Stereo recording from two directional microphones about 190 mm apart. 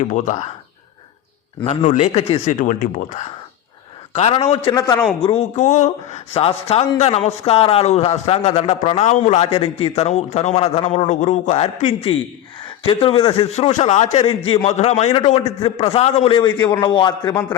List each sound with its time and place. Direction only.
0.0 s a man's voice: 40° left (ahead or behind)
1.6 s a man's voice: 35° left (ahead or behind)
2.6 s speech: 45° left (ahead or behind)
4.1 s a man's voice: 30° left (ahead or behind)
5.2 s a man's voice: 30° left (ahead or behind)